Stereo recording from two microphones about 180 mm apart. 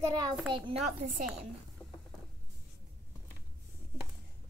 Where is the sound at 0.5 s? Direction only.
30° right (ahead or behind).